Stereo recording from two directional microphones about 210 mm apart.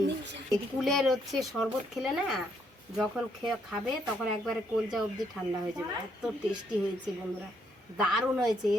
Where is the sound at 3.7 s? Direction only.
Centre (ahead or behind).